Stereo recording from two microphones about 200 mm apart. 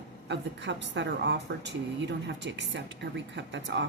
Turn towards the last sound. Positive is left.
turn(degrees=-65)  # may be behind; listen again after turning